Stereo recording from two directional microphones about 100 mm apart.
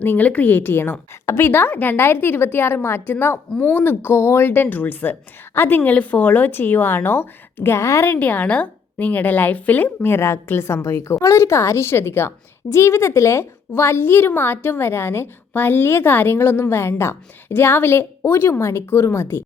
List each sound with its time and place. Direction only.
0.0 s speech: 20° left (ahead or behind)
8.0 s a woman's voice: 20° left (ahead or behind)